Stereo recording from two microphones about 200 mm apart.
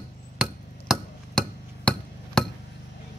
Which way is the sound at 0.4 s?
Centre (ahead or behind).